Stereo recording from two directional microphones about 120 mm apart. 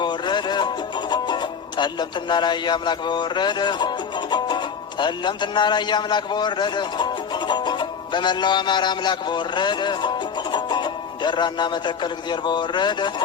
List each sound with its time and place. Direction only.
0.0 s music: 40° left (ahead or behind)
1.1 s speech: 40° left (ahead or behind)